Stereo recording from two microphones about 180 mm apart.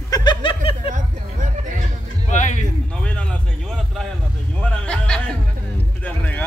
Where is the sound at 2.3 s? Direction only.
40° left (ahead or behind).